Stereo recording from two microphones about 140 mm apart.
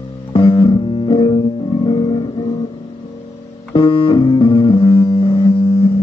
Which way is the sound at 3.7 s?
35° left (ahead or behind).